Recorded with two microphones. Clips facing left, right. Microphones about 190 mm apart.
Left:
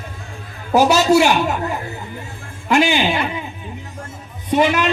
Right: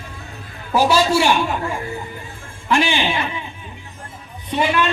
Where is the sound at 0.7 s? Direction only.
45° left (ahead or behind).